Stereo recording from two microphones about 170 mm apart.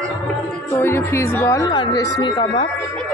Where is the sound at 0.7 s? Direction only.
15° left (ahead or behind); by 2.7 s 30° left (ahead or behind).